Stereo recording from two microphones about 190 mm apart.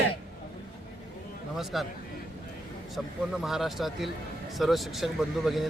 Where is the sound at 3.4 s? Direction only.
Centre (ahead or behind).